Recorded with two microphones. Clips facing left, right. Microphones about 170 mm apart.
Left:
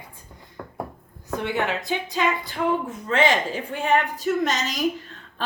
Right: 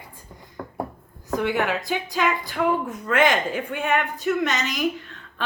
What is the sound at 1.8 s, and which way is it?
Music, 20° left (ahead or behind).